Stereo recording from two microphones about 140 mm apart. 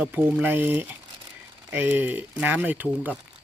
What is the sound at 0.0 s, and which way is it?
Speech, 10° right (ahead or behind).